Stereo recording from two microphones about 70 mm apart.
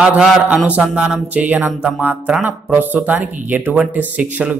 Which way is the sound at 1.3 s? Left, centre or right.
Right.